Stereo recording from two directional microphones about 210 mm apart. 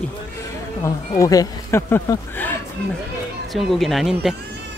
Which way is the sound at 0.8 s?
15° left (ahead or behind).